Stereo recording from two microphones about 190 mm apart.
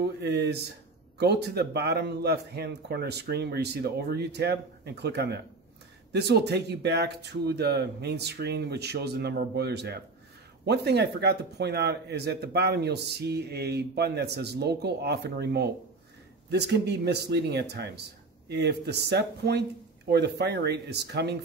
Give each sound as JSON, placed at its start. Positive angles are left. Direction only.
{"t": 0.0, "sound": "speech", "side_deg": -60}